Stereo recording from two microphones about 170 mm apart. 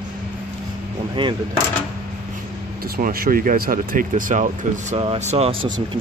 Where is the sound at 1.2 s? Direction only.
30° right (ahead or behind).